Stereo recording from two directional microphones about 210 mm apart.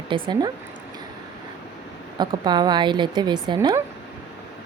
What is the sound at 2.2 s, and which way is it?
A woman's voice, 20° right (ahead or behind).